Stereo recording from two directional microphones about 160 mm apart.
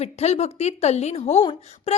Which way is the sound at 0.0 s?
45° left (ahead or behind).